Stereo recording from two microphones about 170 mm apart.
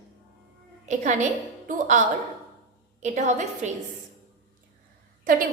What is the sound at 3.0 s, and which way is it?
Speech, 45° right (ahead or behind).